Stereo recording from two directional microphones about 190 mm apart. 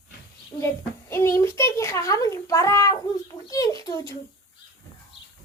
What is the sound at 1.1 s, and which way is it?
A child's voice, 15° left (ahead or behind).